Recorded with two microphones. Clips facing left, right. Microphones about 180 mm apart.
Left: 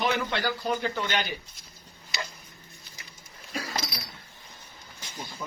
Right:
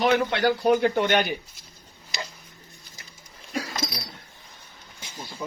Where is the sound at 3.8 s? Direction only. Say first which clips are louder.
Right 6 dB; 45° right (ahead or behind).